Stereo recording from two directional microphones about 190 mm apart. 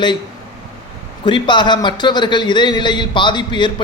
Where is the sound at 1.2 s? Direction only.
25° left (ahead or behind).